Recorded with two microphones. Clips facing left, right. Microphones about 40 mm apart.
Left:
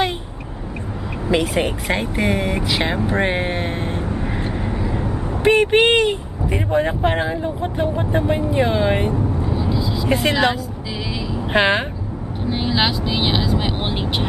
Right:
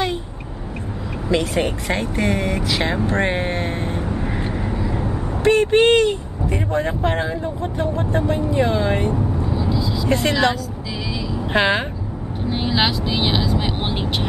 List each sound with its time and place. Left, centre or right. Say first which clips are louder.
1.3 s speech: left 1 dB; centre
3.1 s vehicle: left 1 dB; centre
5.4 s speech: even; left
9.1 s vehicle: left 1 dB; centre
11.5 s speech: left 1 dB; centre
12.4 s vehicle: even; centre